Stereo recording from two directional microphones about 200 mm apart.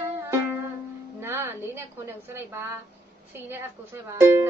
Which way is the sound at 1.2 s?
10° right (ahead or behind).